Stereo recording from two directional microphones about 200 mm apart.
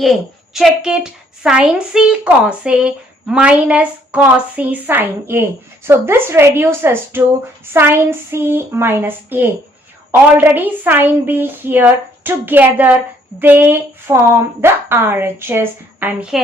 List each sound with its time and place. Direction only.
0.0 s a child's voice: centre (ahead or behind)